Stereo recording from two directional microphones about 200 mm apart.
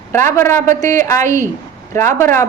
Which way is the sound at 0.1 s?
10° left (ahead or behind).